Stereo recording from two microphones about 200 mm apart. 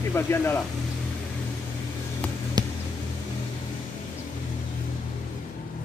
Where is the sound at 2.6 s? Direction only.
20° right (ahead or behind).